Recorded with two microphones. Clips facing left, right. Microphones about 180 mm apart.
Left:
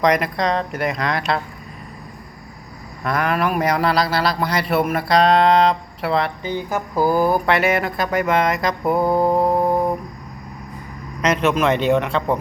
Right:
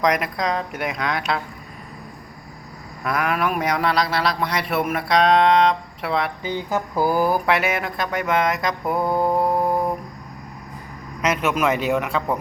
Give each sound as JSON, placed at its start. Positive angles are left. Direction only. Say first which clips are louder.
{"t": 0.0, "sound": "a man's voice", "louder": "left 3 dB", "side_deg": 0}
{"t": 3.0, "sound": "a man's voice", "louder": "left 2 dB", "side_deg": -5}
{"t": 6.7, "sound": "mantra", "louder": "left 2 dB", "side_deg": 15}
{"t": 7.2, "sound": "a man's voice", "louder": "left 2 dB", "side_deg": -5}
{"t": 9.0, "sound": "mantra", "louder": "left 2 dB", "side_deg": 0}
{"t": 11.2, "sound": "speech", "louder": "left 3 dB", "side_deg": -5}